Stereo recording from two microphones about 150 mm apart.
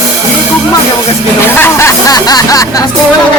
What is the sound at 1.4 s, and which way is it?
Speech, 15° left (ahead or behind).